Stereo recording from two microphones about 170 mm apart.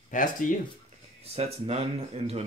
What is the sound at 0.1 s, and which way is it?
Speech, 50° left (ahead or behind).